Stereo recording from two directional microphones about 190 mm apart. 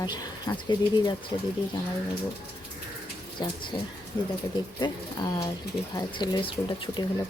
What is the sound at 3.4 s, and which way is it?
Speech, 20° left (ahead or behind).